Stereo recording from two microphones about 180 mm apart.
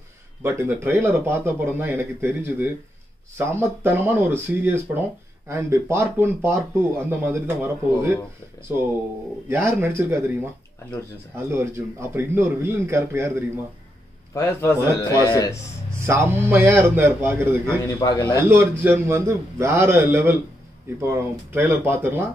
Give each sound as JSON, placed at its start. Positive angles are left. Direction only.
{"t": 0.4, "sound": "speech", "side_deg": -15}
{"t": 9.5, "sound": "speech", "side_deg": -15}
{"t": 11.4, "sound": "speech", "side_deg": -15}
{"t": 14.3, "sound": "a man's voice", "side_deg": 15}
{"t": 16.1, "sound": "speech", "side_deg": -15}
{"t": 18.0, "sound": "a man's voice", "side_deg": 20}
{"t": 18.5, "sound": "speech", "side_deg": -10}